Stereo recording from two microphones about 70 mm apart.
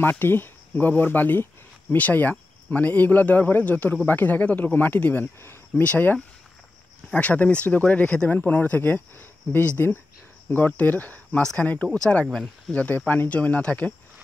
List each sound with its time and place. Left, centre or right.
0.0 s speech: left
5.4 s a sound: left
5.9 s speech: left
12.3 s speech: centre
12.7 s speech: left